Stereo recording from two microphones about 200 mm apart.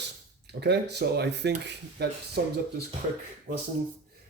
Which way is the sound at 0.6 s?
55° right (ahead or behind).